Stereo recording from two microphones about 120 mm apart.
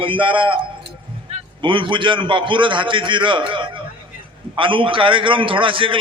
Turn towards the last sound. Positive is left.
turn(degrees=-45)  # may be behind; listen again after turning